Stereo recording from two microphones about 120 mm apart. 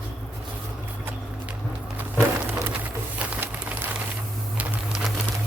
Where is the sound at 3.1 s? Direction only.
15° right (ahead or behind).